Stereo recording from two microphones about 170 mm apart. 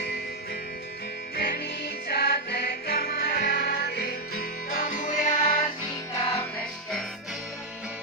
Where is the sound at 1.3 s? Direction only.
75° left (ahead or behind).